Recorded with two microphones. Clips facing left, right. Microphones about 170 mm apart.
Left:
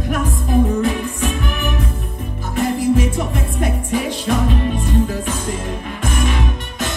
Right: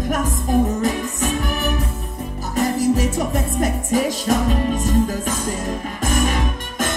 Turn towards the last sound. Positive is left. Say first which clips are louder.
# even
turn(degrees=-45)  # may be behind; listen again after turning